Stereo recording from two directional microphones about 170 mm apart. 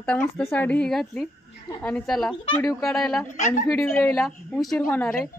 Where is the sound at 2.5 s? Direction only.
20° left (ahead or behind).